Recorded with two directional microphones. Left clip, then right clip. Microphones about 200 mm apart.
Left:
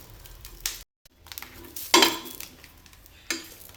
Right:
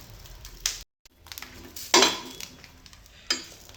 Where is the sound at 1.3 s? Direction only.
Centre (ahead or behind).